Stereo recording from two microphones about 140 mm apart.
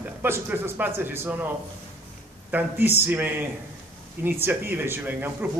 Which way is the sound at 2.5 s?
15° right (ahead or behind).